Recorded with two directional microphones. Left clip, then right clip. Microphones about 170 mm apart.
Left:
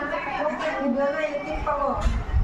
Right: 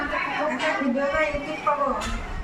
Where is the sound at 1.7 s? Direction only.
55° left (ahead or behind).